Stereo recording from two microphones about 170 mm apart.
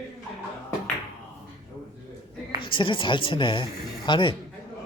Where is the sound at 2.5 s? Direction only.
30° left (ahead or behind).